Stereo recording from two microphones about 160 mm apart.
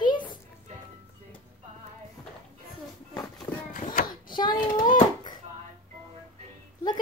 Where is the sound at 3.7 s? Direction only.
60° left (ahead or behind).